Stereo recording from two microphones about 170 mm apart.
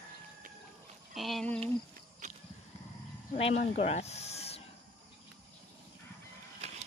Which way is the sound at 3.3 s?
35° left (ahead or behind).